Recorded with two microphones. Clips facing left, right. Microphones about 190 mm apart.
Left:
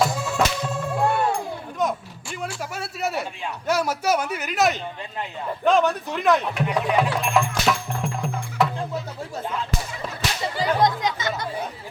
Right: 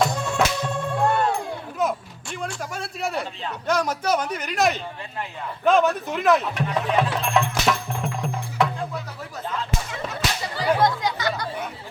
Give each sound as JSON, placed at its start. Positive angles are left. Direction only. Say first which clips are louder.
{"t": 0.0, "sound": "music", "louder": "even", "side_deg": 5}
{"t": 1.8, "sound": "speech", "louder": "even", "side_deg": 0}
{"t": 6.7, "sound": "speech", "louder": "left 1 dB", "side_deg": 15}
{"t": 7.3, "sound": "music", "louder": "right 1 dB", "side_deg": 0}
{"t": 10.8, "sound": "chatter", "louder": "even", "side_deg": 20}